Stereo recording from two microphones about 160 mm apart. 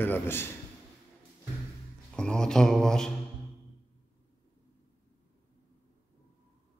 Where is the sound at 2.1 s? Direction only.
5° left (ahead or behind).